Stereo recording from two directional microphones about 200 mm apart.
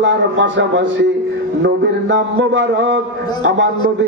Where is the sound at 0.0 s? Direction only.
65° right (ahead or behind).